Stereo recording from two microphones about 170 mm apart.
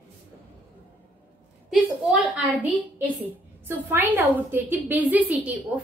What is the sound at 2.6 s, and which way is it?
A woman's voice, 10° right (ahead or behind).